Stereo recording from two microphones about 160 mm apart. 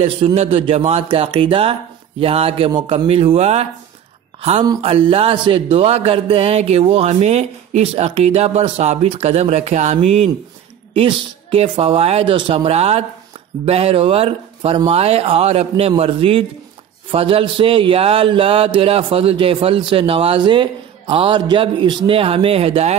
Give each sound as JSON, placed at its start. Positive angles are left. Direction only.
{"t": 0.0, "sound": "a man's voice", "side_deg": -40}